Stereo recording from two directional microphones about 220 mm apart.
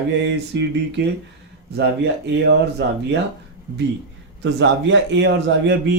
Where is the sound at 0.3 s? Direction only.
55° right (ahead or behind).